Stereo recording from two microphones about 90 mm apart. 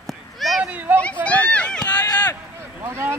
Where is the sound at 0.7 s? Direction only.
20° right (ahead or behind).